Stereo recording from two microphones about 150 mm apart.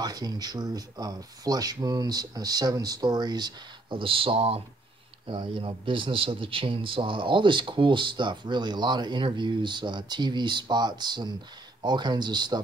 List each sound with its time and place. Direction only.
0.0 s a man's voice: 25° right (ahead or behind)